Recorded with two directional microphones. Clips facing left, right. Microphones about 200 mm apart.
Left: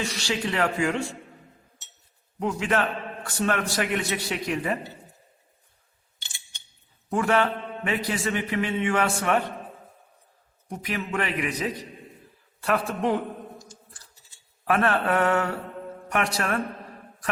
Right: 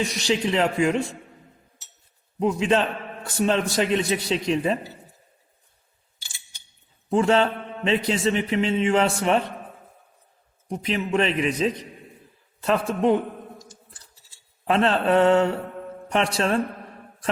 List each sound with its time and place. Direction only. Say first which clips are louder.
0.0 s a man's voice: right 5 dB; 20° right (ahead or behind)
2.4 s a man's voice: right 4 dB; 20° right (ahead or behind)
7.1 s a man's voice: right 4 dB; 25° right (ahead or behind)
10.7 s a man's voice: right 6 dB; 25° right (ahead or behind)
14.6 s a man's voice: right 2 dB; 25° right (ahead or behind)